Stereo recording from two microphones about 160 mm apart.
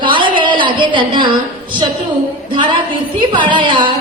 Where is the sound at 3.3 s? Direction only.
30° right (ahead or behind).